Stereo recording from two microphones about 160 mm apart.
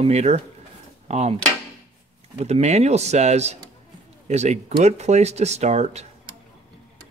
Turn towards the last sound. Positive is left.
turn(degrees=-40)  # may be behind; listen again after turning